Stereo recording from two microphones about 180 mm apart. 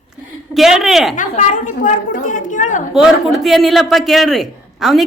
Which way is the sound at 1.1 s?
45° left (ahead or behind).